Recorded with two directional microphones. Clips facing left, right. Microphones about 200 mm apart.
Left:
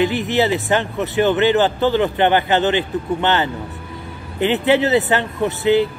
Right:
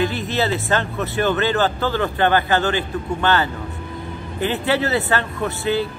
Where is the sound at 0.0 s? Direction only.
15° left (ahead or behind).